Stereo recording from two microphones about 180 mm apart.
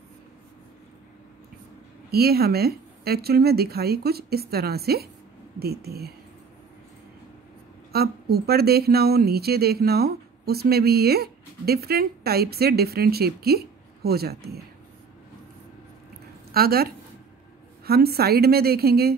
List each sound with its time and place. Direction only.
2.0 s speech: 60° right (ahead or behind)
7.9 s speech: 60° right (ahead or behind)
16.5 s speech: 60° right (ahead or behind)